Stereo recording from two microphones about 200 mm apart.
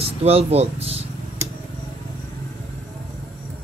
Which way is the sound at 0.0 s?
30° right (ahead or behind).